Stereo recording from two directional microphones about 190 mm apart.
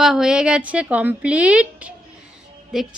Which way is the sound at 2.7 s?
Centre (ahead or behind).